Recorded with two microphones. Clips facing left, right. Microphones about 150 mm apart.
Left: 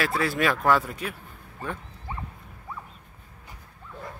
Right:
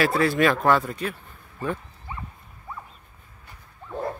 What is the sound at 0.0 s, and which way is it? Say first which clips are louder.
Speech: right 5 dB; centre (ahead or behind).